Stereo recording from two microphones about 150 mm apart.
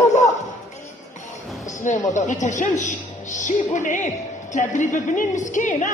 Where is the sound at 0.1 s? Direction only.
55° left (ahead or behind).